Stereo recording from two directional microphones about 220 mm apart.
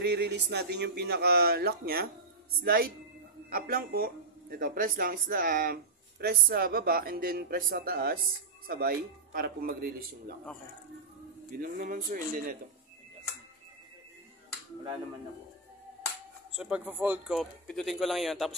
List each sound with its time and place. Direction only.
0.0 s speech: 50° right (ahead or behind)
11.6 s speech: 40° right (ahead or behind)
16.5 s a man's voice: 5° right (ahead or behind)